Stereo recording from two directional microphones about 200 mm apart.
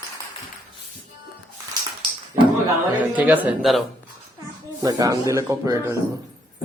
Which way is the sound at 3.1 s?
5° right (ahead or behind).